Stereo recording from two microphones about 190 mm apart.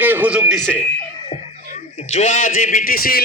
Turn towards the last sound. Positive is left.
turn(degrees=50)  # may be behind; listen again after turning